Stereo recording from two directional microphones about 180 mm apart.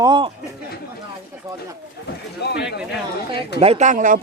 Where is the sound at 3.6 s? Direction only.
35° right (ahead or behind).